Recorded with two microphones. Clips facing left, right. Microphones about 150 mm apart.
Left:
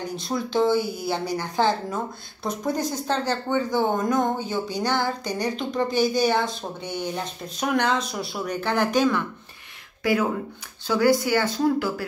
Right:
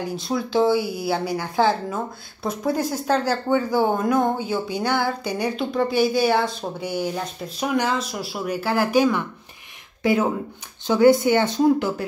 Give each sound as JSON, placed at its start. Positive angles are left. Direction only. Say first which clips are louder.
{"t": 0.1, "sound": "speech", "louder": "right 2 dB", "side_deg": 0}
{"t": 10.0, "sound": "speech", "louder": "right 2 dB", "side_deg": -25}